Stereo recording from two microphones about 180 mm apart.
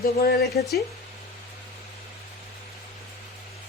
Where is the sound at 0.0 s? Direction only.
55° left (ahead or behind).